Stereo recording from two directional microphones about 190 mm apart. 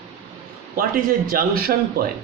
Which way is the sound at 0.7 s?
50° right (ahead or behind).